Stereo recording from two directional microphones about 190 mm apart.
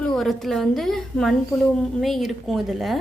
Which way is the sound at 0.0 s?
Centre (ahead or behind).